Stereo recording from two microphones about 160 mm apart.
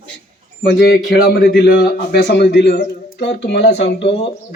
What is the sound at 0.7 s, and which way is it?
A man's voice, 80° left.